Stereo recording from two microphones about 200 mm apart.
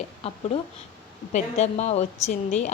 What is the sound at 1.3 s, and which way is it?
Speech, 35° left (ahead or behind).